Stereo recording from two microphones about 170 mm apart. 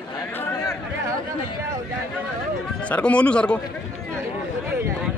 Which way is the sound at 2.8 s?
5° left (ahead or behind).